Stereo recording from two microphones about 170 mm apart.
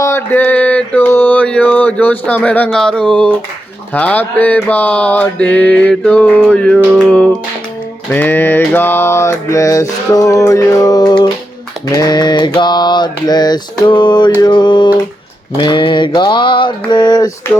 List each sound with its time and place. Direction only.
0.0 s mantra: 15° left (ahead or behind)